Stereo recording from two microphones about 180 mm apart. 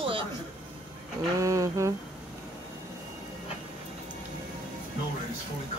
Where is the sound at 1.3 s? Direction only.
20° right (ahead or behind).